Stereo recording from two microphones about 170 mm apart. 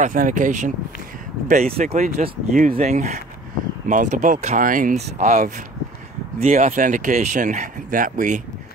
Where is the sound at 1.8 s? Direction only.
45° right (ahead or behind).